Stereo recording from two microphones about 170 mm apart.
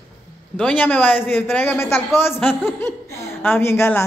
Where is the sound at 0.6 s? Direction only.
10° left (ahead or behind).